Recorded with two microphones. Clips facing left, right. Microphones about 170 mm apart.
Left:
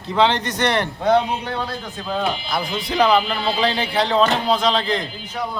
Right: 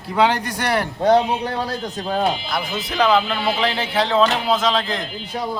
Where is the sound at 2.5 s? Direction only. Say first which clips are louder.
Left 1 dB; 5° right (ahead or behind).